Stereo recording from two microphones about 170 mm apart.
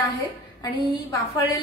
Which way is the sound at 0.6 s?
20° left (ahead or behind).